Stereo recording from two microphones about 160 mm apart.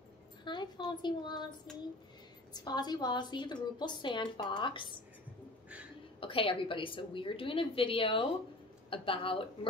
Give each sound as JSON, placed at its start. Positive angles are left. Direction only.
{"t": 0.5, "sound": "a woman's voice", "side_deg": 30}
{"t": 2.5, "sound": "a woman's voice", "side_deg": 25}
{"t": 6.1, "sound": "a woman's voice", "side_deg": 35}